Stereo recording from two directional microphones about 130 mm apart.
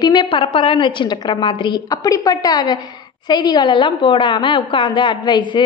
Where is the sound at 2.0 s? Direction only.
25° left (ahead or behind).